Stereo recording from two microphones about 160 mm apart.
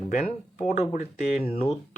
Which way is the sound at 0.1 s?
45° left (ahead or behind).